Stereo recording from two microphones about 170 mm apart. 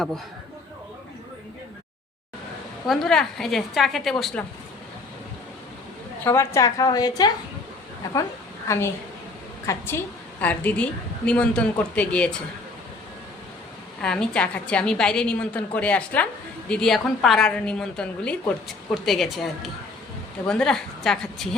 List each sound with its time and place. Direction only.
2.8 s a woman's voice: centre (ahead or behind)
6.2 s a woman's voice: 15° left (ahead or behind)
8.6 s a woman's voice: 15° left (ahead or behind)
14.0 s a woman's voice: 5° left (ahead or behind)